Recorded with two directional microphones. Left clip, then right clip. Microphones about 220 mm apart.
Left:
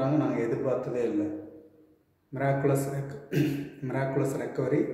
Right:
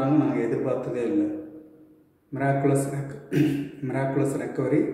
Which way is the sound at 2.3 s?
10° left (ahead or behind).